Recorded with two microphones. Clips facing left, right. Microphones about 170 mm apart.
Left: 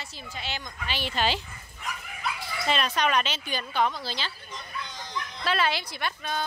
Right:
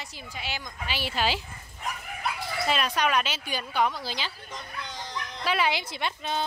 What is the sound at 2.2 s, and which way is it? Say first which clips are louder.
Dog: right 1 dB; 60° right (ahead or behind).